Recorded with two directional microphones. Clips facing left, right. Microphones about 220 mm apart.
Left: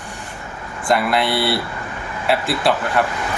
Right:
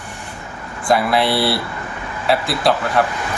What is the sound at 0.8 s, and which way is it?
Speech, centre (ahead or behind).